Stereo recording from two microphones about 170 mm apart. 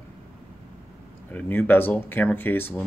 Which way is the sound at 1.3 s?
10° left (ahead or behind).